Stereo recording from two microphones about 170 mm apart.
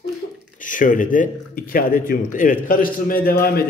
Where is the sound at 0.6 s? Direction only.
50° left (ahead or behind).